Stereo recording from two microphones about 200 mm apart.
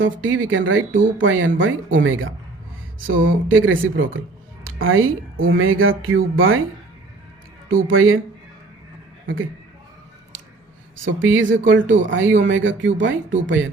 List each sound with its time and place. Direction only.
0.0 s speech: 75° right (ahead or behind)
4.6 s speech: 90° right
7.7 s speech: 90° right
9.2 s speech: 80° right
10.9 s speech: 75° right (ahead or behind)